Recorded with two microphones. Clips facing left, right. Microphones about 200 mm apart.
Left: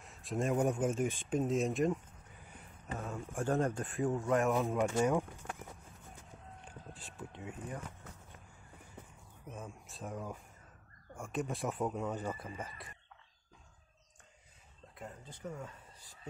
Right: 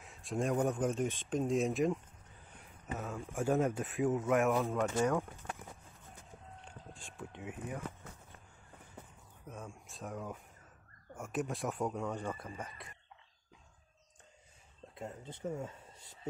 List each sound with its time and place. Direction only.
0.0 s a sound: centre (ahead or behind)
0.6 s speech: 10° left (ahead or behind)
2.6 s a sound: centre (ahead or behind)
3.3 s speech: 10° right (ahead or behind)
4.7 s speech: 15° left (ahead or behind)
6.6 s speech: 5° left (ahead or behind)
9.5 s speech: 5° left (ahead or behind)
15.0 s speech: 25° right (ahead or behind)